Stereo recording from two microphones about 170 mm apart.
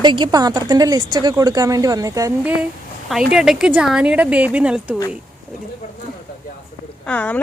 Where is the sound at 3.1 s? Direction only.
5° right (ahead or behind).